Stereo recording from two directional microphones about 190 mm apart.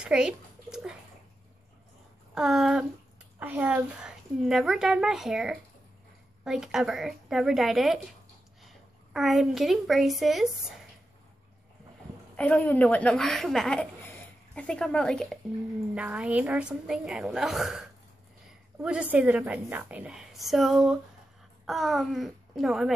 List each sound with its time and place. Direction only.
0.0 s a sound: 5° right (ahead or behind)
2.3 s a woman's voice: 5° right (ahead or behind)
12.4 s a woman's voice: 5° left (ahead or behind)
15.9 s a woman's voice: 5° right (ahead or behind)